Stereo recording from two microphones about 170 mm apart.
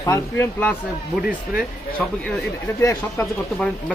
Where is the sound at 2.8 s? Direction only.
15° left (ahead or behind).